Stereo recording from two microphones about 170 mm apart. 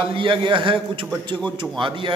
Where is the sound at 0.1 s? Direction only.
30° right (ahead or behind).